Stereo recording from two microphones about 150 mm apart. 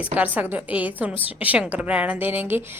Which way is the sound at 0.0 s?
10° right (ahead or behind).